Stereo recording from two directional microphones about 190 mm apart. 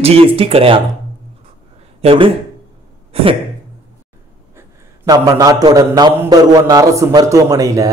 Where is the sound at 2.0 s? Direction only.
30° right (ahead or behind).